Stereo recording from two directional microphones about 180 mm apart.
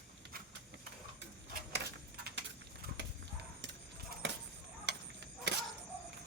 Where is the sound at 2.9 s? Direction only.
80° right.